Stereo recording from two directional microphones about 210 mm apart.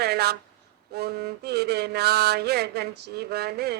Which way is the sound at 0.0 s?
50° right (ahead or behind).